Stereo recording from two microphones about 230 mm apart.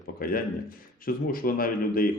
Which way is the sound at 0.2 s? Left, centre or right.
Left.